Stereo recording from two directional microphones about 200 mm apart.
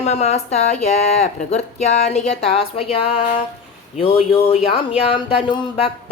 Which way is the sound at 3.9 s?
30° left (ahead or behind).